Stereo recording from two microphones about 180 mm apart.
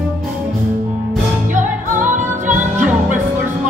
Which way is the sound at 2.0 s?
45° right (ahead or behind).